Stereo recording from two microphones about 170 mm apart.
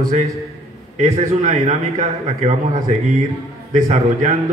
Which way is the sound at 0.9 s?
45° right (ahead or behind).